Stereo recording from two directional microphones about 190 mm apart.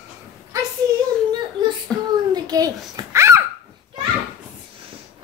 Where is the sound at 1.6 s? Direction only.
25° right (ahead or behind).